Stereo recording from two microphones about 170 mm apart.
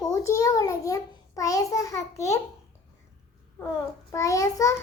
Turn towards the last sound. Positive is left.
turn(degrees=20)  # may be behind; listen again after turning